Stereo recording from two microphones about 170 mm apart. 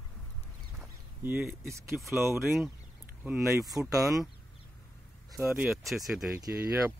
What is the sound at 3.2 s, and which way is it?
Speech, 15° right (ahead or behind).